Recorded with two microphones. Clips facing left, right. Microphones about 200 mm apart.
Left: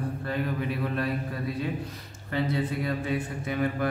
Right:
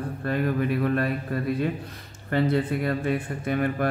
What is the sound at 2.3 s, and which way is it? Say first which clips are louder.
Speech: right 5 dB; 55° right (ahead or behind).